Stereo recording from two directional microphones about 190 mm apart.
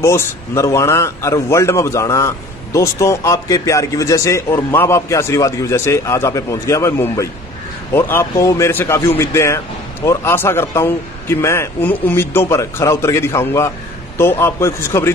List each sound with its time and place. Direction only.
0.0 s a man's voice: 15° left (ahead or behind)